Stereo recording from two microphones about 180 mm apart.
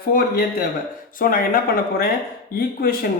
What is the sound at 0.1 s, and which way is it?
Speech, 55° left (ahead or behind).